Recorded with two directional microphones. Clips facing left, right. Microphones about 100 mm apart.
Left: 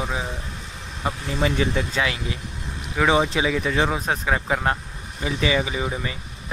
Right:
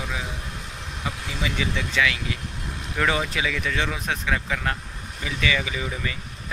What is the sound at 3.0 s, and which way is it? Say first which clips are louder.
Speech: left 6 dB; 25° left (ahead or behind).